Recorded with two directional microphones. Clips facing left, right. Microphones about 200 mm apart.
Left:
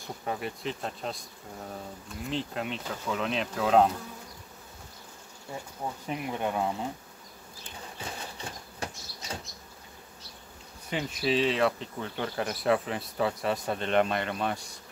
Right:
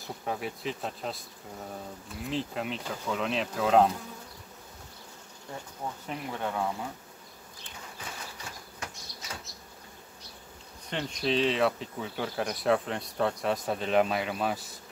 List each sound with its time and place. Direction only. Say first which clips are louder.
0.0 s speech: even; centre (ahead or behind)
6.0 s speech: left 3 dB; 15° left (ahead or behind)
8.0 s bird flight: left 4 dB; 30° left (ahead or behind)
10.9 s speech: left 1 dB; 5° left (ahead or behind)